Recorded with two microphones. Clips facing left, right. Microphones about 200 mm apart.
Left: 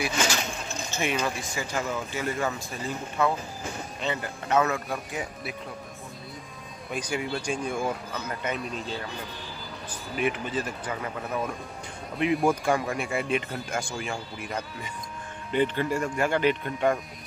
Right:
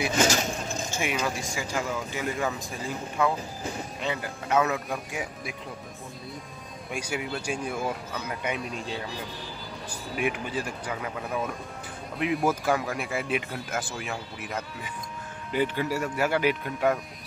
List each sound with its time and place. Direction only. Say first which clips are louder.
0.1 s speech: right 4 dB; 40° right (ahead or behind)
0.9 s speech: left 2 dB; 10° right (ahead or behind)
6.9 s speech: left 2 dB; 10° right (ahead or behind)
9.8 s speech: left 1 dB; 10° right (ahead or behind)